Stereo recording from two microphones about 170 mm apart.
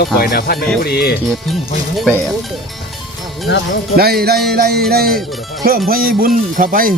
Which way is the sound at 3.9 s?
65° right (ahead or behind).